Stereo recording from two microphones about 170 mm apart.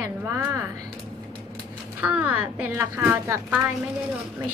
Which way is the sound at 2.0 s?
10° right (ahead or behind).